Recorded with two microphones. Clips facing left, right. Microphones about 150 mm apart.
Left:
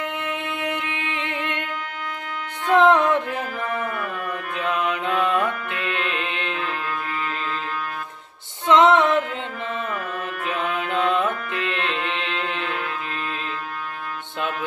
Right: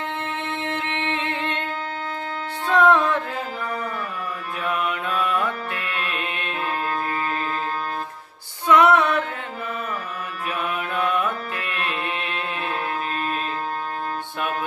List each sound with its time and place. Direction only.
2.7 s music: 20° left (ahead or behind)
4.6 s mantra: 20° left (ahead or behind)
8.6 s female singing: 25° left (ahead or behind)
11.0 s music: 20° left (ahead or behind)